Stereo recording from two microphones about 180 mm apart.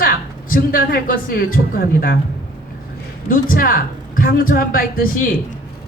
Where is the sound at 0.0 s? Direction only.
50° left (ahead or behind).